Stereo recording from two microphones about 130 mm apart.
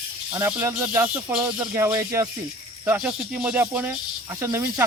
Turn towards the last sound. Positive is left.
turn(degrees=-20)  # may be behind; listen again after turning